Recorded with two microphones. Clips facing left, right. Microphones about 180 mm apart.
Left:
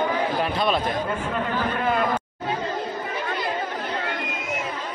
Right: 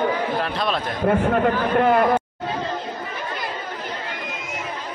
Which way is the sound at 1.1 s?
60° right (ahead or behind).